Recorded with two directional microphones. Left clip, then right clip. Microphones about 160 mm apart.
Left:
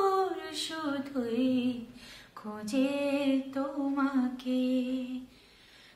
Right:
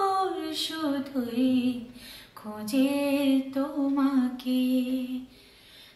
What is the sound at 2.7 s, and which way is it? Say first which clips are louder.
Music: right 4 dB; 20° left (ahead or behind).